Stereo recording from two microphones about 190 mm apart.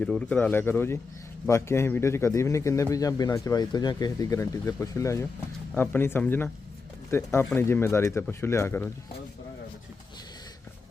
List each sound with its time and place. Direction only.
0.0 s a man's voice: 5° left (ahead or behind)